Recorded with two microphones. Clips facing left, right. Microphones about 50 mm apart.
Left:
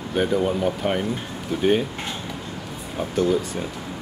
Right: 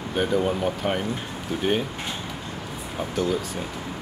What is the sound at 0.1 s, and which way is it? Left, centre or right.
Speech, centre.